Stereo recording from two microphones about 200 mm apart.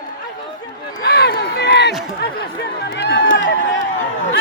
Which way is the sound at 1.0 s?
50° left (ahead or behind).